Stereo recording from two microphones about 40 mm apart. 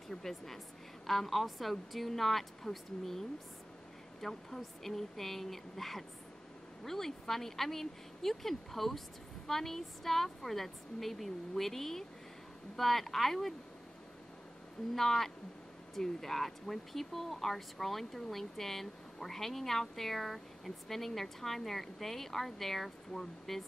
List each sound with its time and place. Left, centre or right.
0.1 s a woman's voice: centre
15.0 s speech: centre